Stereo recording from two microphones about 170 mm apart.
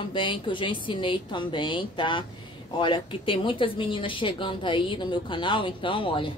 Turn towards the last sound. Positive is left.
turn(degrees=30)  # may be behind; listen again after turning